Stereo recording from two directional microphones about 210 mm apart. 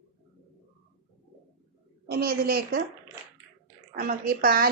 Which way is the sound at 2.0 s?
45° right (ahead or behind).